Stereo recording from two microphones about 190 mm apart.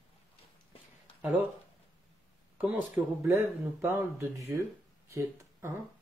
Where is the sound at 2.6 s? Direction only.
10° right (ahead or behind).